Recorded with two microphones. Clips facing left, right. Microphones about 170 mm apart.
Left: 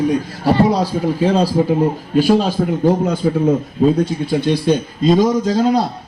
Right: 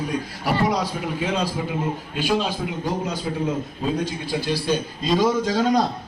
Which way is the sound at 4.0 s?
25° left (ahead or behind).